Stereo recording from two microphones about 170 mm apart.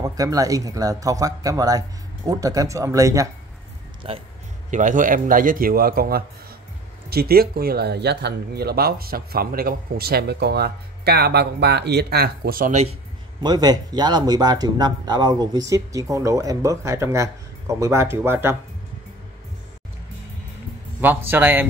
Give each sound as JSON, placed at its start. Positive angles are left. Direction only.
{"t": 0.0, "sound": "speech", "side_deg": -20}
{"t": 4.1, "sound": "speech", "side_deg": -35}
{"t": 4.6, "sound": "speech", "side_deg": -45}
{"t": 13.4, "sound": "speech", "side_deg": -25}
{"t": 21.0, "sound": "a man's voice", "side_deg": -10}